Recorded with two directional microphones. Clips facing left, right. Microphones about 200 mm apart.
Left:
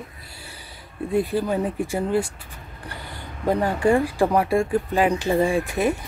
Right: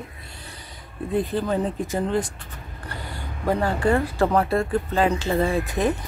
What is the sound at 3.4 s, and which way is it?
Speech, 15° left (ahead or behind).